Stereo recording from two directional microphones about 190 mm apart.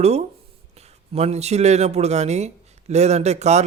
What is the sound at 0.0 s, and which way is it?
A man's voice, 35° right (ahead or behind).